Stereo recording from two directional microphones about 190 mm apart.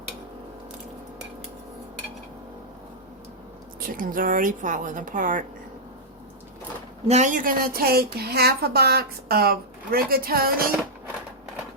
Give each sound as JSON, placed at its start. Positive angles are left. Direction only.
{"t": 3.8, "sound": "a woman's voice", "side_deg": -45}
{"t": 7.1, "sound": "a woman's voice", "side_deg": -40}